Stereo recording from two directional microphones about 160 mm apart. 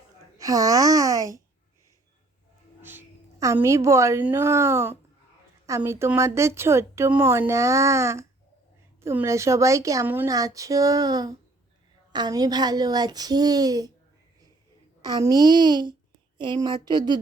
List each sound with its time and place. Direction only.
0.3 s speech: 20° right (ahead or behind)
3.4 s a woman's voice: 20° right (ahead or behind)
15.0 s a woman's voice: 25° right (ahead or behind)